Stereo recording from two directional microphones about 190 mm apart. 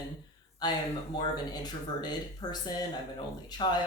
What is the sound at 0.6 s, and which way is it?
Speech, 20° left (ahead or behind).